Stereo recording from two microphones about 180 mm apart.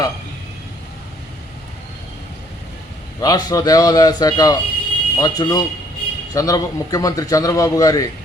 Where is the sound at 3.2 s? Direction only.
20° left (ahead or behind).